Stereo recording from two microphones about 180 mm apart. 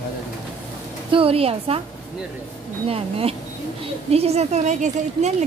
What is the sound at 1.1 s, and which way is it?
Speech, 30° right (ahead or behind).